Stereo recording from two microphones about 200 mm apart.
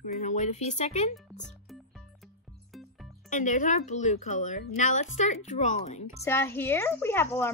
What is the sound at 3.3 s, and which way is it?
A woman's voice, 40° left (ahead or behind).